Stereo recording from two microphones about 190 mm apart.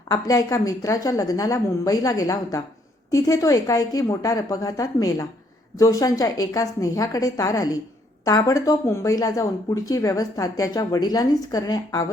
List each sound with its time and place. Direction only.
0.1 s speech: 20° left (ahead or behind)